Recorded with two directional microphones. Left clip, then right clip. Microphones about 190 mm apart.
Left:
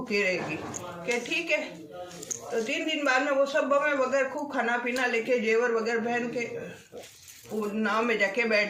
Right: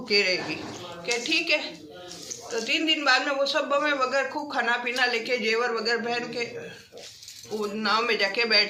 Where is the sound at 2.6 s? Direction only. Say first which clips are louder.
Right 6 dB; 5° right (ahead or behind).